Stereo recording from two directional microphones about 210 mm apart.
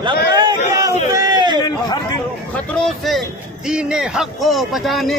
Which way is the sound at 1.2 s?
20° right (ahead or behind).